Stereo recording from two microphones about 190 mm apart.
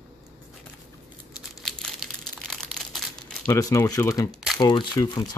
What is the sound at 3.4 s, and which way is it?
Speech, 15° left (ahead or behind).